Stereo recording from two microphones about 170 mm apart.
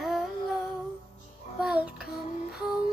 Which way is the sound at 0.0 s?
Centre (ahead or behind).